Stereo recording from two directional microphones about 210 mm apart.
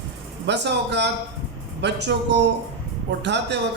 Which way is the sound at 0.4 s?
55° right (ahead or behind).